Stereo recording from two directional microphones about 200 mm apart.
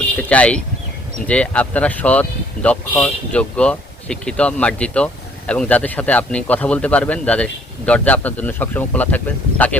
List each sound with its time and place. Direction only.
0.2 s speech: 5° left (ahead or behind)